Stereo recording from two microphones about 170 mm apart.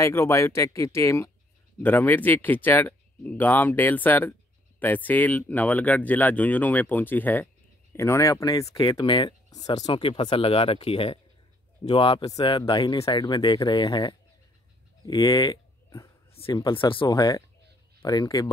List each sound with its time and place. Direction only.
0.0 s speech: 15° left (ahead or behind)